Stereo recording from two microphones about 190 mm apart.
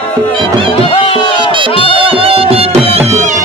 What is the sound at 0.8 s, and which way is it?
Music, 30° left (ahead or behind).